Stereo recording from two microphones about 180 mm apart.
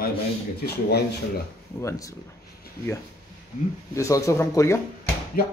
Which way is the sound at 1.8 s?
15° left (ahead or behind).